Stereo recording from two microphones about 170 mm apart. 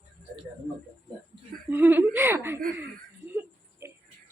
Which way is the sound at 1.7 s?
10° right (ahead or behind).